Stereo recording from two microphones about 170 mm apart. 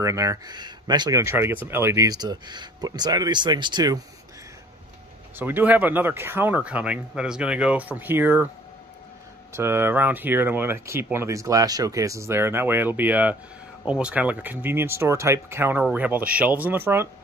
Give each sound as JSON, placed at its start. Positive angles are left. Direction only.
{"t": 0.0, "sound": "speech", "side_deg": -20}
{"t": 5.4, "sound": "speech", "side_deg": -10}
{"t": 9.5, "sound": "speech", "side_deg": -15}